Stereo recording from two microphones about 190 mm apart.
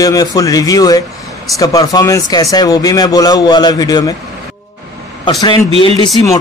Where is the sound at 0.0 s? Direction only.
20° left (ahead or behind).